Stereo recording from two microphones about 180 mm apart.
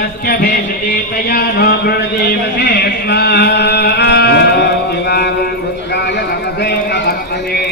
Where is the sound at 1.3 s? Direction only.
60° left (ahead or behind).